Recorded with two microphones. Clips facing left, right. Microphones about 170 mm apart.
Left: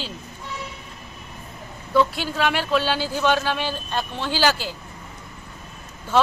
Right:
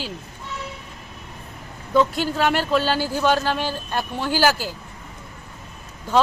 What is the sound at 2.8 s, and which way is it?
Speech, 15° left (ahead or behind).